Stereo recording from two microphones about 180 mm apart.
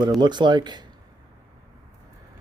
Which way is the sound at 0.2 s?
25° right (ahead or behind).